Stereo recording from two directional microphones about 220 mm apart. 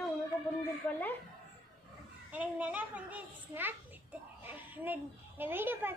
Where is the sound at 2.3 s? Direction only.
5° right (ahead or behind).